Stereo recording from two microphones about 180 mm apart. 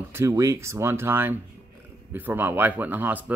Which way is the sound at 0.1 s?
15° right (ahead or behind).